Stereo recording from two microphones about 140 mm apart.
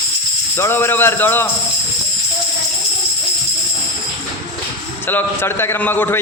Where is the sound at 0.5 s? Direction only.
15° left (ahead or behind).